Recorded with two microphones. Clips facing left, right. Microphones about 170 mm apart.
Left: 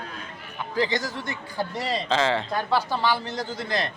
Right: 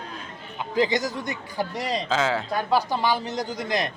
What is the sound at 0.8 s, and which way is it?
A man's voice, 20° right (ahead or behind).